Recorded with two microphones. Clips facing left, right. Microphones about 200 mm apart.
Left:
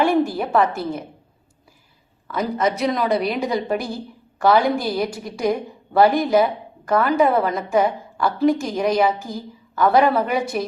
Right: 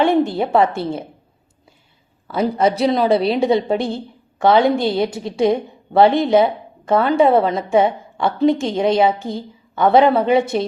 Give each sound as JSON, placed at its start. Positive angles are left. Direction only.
{"t": 0.0, "sound": "a woman's voice", "side_deg": -20}
{"t": 2.2, "sound": "a woman's voice", "side_deg": -30}